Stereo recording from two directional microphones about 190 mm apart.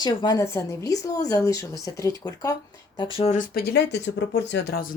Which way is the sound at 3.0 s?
30° left (ahead or behind).